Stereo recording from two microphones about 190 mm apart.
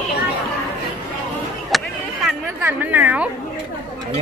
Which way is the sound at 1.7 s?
Centre (ahead or behind).